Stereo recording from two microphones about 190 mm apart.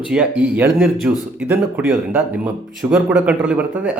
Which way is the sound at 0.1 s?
5° right (ahead or behind).